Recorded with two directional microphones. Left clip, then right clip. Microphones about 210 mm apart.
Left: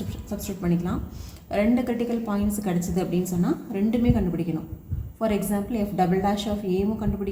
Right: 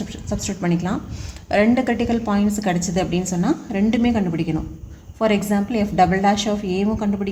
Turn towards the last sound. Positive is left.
turn(degrees=-50)  # may be behind; listen again after turning